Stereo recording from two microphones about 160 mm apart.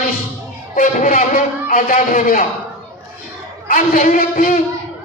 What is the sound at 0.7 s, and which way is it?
A man's voice, 55° left (ahead or behind).